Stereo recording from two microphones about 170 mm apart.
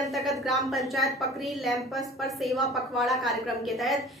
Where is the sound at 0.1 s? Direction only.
Centre (ahead or behind).